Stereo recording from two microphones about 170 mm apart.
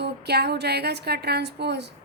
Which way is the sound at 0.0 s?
75° right (ahead or behind).